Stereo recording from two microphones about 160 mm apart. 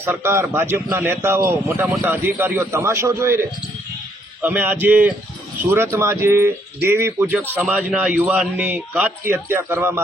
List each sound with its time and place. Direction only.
0.0 s a man's voice: 15° right (ahead or behind)
4.4 s a man's voice: 10° right (ahead or behind)